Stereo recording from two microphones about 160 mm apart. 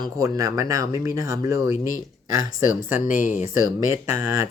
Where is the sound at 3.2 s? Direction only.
50° left (ahead or behind).